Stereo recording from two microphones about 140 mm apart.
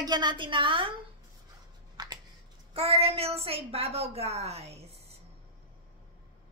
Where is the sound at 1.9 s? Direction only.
30° right (ahead or behind).